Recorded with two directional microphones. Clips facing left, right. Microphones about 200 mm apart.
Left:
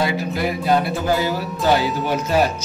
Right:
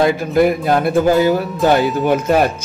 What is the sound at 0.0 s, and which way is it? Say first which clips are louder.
Speech: right 8 dB; 50° right (ahead or behind).